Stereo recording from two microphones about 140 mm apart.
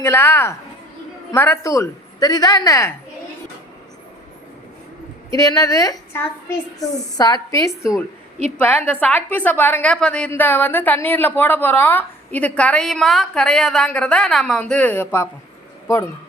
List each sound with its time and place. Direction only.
0.0 s a woman's voice: 20° left (ahead or behind)
5.3 s a woman's voice: 25° left (ahead or behind)